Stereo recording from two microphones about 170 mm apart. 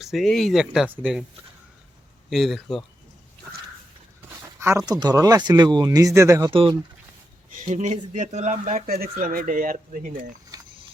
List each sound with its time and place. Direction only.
0.0 s speech: centre (ahead or behind)
2.3 s speech: centre (ahead or behind)
4.9 s speech: 25° right (ahead or behind)
6.5 s speech: 30° right (ahead or behind)
7.5 s speech: 45° right (ahead or behind)
10.5 s a sound: 20° right (ahead or behind)